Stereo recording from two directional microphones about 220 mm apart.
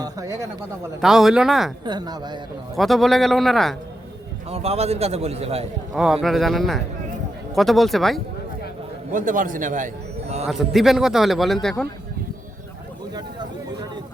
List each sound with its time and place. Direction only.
0.0 s speech: 15° right (ahead or behind)
1.0 s speech: centre (ahead or behind)
1.8 s a man's voice: 20° right (ahead or behind)
2.7 s speech: centre (ahead or behind)
4.4 s a man's voice: 25° right (ahead or behind)
5.9 s speech: centre (ahead or behind)
9.1 s speech: 35° right (ahead or behind)
10.4 s speech: centre (ahead or behind)